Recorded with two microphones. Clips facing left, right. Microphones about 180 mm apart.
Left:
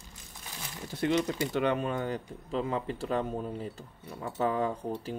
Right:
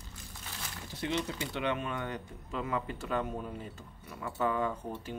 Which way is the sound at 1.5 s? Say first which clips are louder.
Left 4 dB; 40° left (ahead or behind).